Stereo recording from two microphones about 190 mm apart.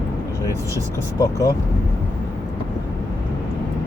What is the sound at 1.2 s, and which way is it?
Speech, 15° left (ahead or behind).